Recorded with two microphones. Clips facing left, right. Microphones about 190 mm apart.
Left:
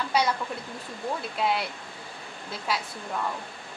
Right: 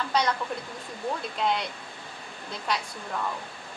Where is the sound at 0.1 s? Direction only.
10° left (ahead or behind).